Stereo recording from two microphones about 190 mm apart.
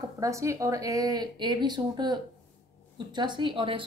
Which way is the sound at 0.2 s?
15° right (ahead or behind).